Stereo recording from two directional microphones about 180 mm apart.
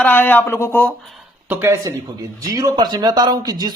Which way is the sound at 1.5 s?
15° right (ahead or behind).